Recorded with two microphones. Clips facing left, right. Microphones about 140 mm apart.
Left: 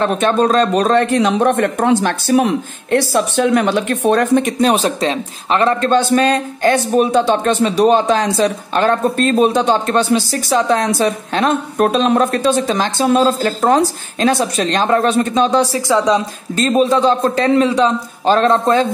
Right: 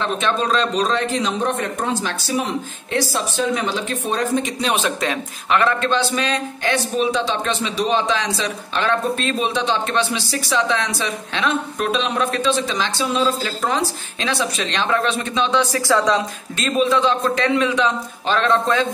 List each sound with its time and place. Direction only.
0.0 s a man's voice: 45° left (ahead or behind)
5.9 s speech: 50° left (ahead or behind)
15.9 s a woman's voice: 20° left (ahead or behind)
16.5 s a man's voice: 35° left (ahead or behind)